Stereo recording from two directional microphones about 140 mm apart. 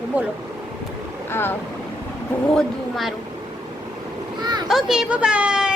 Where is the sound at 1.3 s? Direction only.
15° left (ahead or behind).